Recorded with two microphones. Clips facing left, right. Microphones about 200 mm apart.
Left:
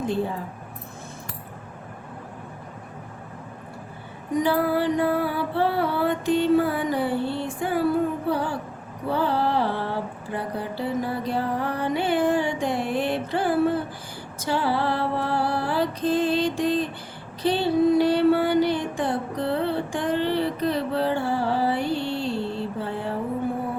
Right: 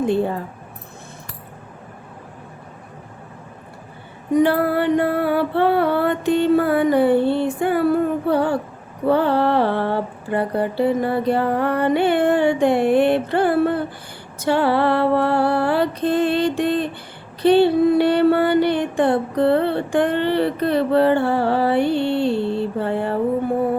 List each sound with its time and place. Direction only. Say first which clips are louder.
4.4 s mantra: right 5 dB; 60° right (ahead or behind)
8.3 s female singing: right 7 dB; 65° right (ahead or behind)
9.0 s mantra: right 7 dB; 60° right (ahead or behind)
14.3 s music: right 7 dB; 65° right (ahead or behind)
17.4 s a sound: right 7 dB; 65° right (ahead or behind)